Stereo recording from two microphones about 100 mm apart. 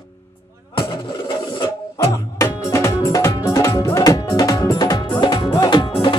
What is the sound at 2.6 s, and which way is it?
Music, 30° left (ahead or behind).